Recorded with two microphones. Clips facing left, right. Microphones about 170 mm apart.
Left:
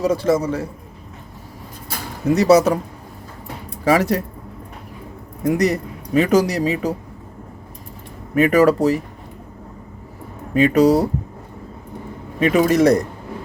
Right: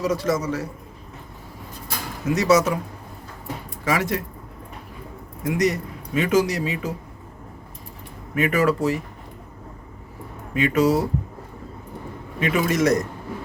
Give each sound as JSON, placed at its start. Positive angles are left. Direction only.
{"t": 0.0, "sound": "speech", "side_deg": 30}
{"t": 2.2, "sound": "speech", "side_deg": 35}
{"t": 3.8, "sound": "speech", "side_deg": 35}
{"t": 5.4, "sound": "speech", "side_deg": 35}
{"t": 8.4, "sound": "speech", "side_deg": 35}
{"t": 10.5, "sound": "speech", "side_deg": 35}
{"t": 12.4, "sound": "speech", "side_deg": 35}